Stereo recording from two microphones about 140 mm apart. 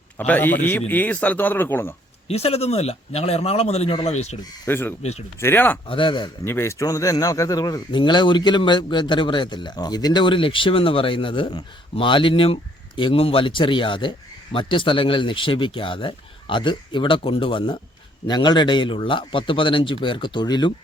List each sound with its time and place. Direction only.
0.2 s speech: 15° left (ahead or behind)
2.2 s a man's voice: 45° left (ahead or behind)
4.6 s speech: 15° left (ahead or behind)
5.9 s speech: 35° left (ahead or behind)
6.4 s speech: 20° left (ahead or behind)